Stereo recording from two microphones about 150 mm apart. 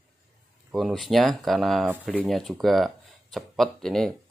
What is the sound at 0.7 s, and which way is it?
Speech, centre (ahead or behind).